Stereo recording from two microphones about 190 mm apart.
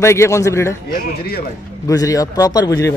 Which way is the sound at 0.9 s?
55° left (ahead or behind).